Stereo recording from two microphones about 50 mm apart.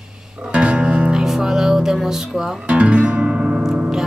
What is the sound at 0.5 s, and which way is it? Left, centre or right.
Music, right.